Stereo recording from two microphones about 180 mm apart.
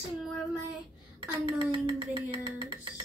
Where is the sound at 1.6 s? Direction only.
25° right (ahead or behind).